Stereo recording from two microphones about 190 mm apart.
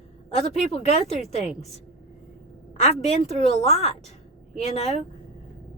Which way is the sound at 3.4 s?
35° left (ahead or behind).